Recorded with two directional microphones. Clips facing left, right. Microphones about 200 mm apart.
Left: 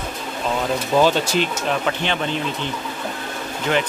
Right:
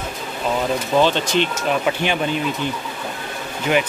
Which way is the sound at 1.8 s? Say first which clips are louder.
Right 2 dB; 10° right (ahead or behind).